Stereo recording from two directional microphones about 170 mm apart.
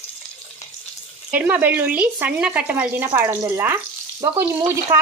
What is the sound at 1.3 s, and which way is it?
Speech, 10° right (ahead or behind).